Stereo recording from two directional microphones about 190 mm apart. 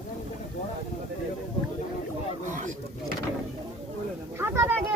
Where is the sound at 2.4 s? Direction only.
40° right (ahead or behind).